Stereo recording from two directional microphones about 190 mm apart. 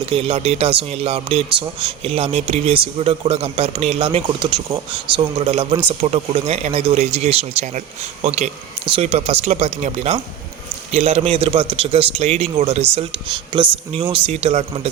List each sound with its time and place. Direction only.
0.0 s a man's voice: 30° right (ahead or behind)
8.9 s a man's voice: 35° right (ahead or behind)